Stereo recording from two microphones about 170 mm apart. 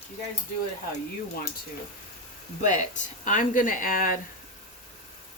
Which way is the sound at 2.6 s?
45° left (ahead or behind).